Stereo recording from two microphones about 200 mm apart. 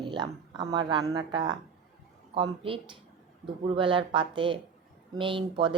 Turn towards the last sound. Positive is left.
turn(degrees=-25)  # may be behind; listen again after turning